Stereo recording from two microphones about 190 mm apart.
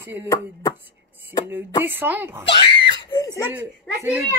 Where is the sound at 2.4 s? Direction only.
25° left (ahead or behind).